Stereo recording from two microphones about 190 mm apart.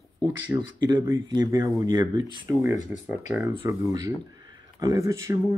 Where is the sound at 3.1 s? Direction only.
10° right (ahead or behind).